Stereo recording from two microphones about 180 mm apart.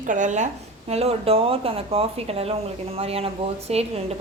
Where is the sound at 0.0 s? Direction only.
45° right (ahead or behind).